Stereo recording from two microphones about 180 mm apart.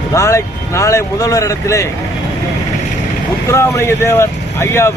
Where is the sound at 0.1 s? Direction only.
15° left (ahead or behind).